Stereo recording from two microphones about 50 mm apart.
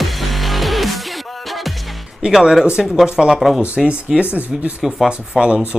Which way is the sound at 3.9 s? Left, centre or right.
Centre.